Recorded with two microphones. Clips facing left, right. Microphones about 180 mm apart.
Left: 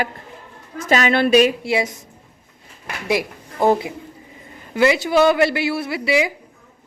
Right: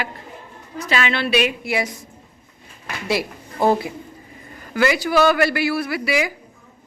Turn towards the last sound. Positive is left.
turn(degrees=25)  # may be behind; listen again after turning